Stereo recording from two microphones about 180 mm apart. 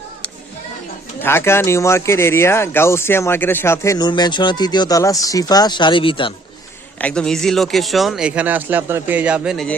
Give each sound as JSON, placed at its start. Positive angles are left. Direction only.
{"t": 1.2, "sound": "speech", "side_deg": 15}
{"t": 7.0, "sound": "speech", "side_deg": 5}